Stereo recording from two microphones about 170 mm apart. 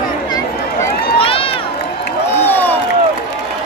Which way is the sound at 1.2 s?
35° left (ahead or behind).